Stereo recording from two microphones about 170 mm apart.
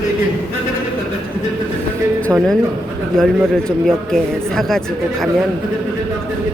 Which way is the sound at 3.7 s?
5° left (ahead or behind).